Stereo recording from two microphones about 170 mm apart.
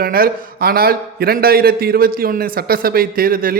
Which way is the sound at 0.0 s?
60° right (ahead or behind).